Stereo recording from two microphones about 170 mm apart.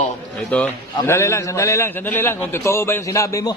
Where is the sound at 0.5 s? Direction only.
5° left (ahead or behind).